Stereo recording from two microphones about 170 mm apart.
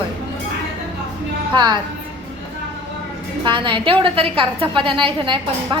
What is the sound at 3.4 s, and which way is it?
A woman's voice, 30° right (ahead or behind).